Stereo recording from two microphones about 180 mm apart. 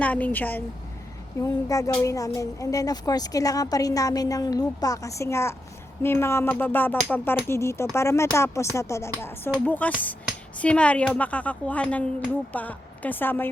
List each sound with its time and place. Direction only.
0.0 s a woman's voice: 10° left (ahead or behind)